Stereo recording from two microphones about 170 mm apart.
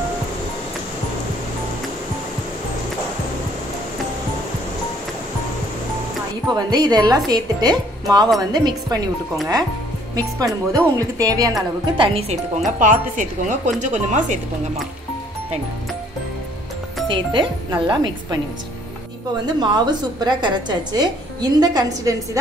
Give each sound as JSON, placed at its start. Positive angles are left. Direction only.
{"t": 6.5, "sound": "a woman's voice", "side_deg": -25}
{"t": 10.1, "sound": "a woman's voice", "side_deg": -20}
{"t": 11.8, "sound": "speech", "side_deg": -30}
{"t": 12.7, "sound": "a woman's voice", "side_deg": -50}
{"t": 17.1, "sound": "a woman's voice", "side_deg": -30}
{"t": 19.4, "sound": "a woman's voice", "side_deg": -25}